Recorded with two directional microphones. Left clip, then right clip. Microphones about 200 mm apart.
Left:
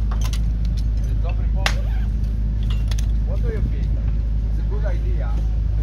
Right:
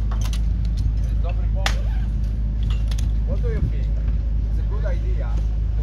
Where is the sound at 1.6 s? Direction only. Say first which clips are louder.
Left 2 dB; 20° left (ahead or behind).